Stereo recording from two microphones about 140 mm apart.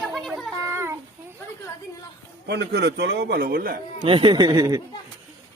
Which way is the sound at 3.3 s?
90° right.